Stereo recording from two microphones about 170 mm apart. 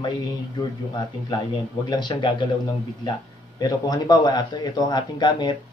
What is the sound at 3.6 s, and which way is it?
Speech, 25° left (ahead or behind).